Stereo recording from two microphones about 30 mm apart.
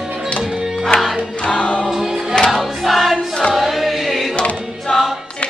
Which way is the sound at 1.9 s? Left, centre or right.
Centre.